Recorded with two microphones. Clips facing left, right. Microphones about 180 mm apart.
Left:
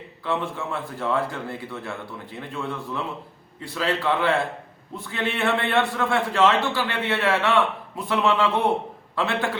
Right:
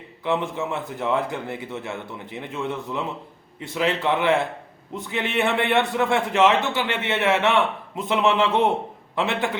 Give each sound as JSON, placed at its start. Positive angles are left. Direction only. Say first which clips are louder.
{"t": 0.3, "sound": "a man's voice", "louder": "right 3 dB", "side_deg": -20}